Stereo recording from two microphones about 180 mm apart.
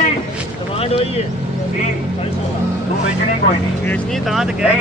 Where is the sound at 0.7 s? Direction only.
30° left (ahead or behind).